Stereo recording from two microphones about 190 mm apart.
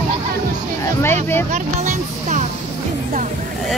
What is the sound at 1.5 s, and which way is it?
Music, 40° right (ahead or behind).